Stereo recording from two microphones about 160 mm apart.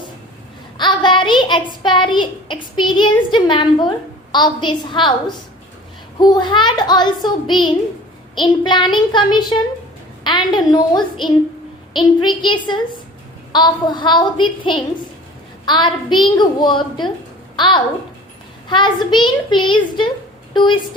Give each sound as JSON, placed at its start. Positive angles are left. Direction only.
{"t": 0.8, "sound": "a child's voice", "side_deg": 30}
{"t": 6.1, "sound": "a child's voice", "side_deg": 25}
{"t": 19.1, "sound": "a child's voice", "side_deg": 30}